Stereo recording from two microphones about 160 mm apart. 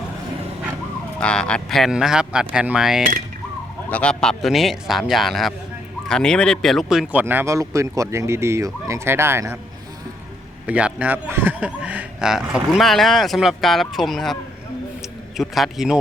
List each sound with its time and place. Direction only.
1.2 s speech: 5° left (ahead or behind)
3.8 s speech: 10° left (ahead or behind); by 9.6 s 15° right (ahead or behind)
10.7 s speech: 10° right (ahead or behind)
15.4 s speech: centre (ahead or behind)